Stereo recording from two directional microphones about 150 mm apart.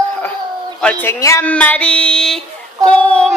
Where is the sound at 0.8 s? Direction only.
10° left (ahead or behind).